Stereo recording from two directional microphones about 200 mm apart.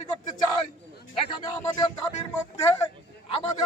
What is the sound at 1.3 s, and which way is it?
Speech, 25° left (ahead or behind).